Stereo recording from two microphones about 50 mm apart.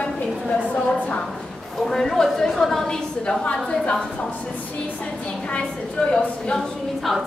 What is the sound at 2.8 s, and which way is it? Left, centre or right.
Speech, centre.